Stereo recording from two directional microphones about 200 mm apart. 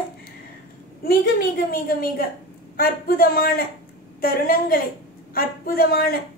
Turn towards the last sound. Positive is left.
turn(degrees=50)  # may be behind; listen again after turning